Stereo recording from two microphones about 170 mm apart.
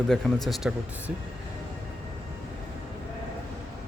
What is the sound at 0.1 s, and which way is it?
Speech, 5° left (ahead or behind).